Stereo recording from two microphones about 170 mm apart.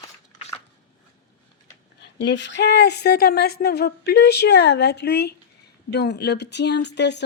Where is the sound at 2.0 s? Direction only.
90° left.